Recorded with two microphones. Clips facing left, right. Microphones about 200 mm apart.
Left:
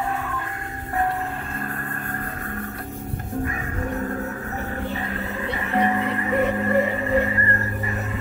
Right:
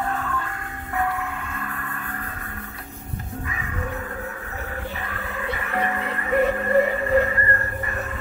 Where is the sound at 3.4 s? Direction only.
45° left (ahead or behind).